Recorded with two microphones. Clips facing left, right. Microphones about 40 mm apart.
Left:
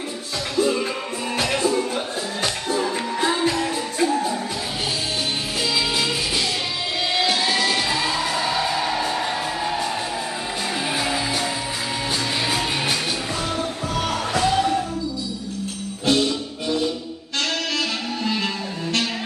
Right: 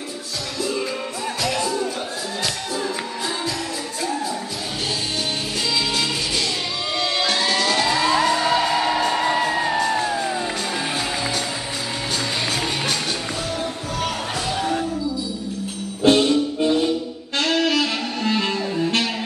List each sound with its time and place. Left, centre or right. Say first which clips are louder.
1.4 s music: left 2 dB; left
3.2 s music: left 5 dB; left
7.2 s music: left 1 dB; centre
8.1 s music: right 6 dB; centre
9.4 s music: right 4 dB; centre
16.0 s music: right 5 dB; right